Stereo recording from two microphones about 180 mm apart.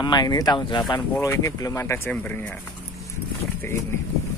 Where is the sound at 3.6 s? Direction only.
15° left (ahead or behind).